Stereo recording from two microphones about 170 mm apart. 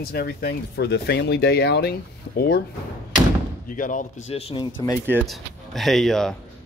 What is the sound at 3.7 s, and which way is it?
Speech, 50° left (ahead or behind).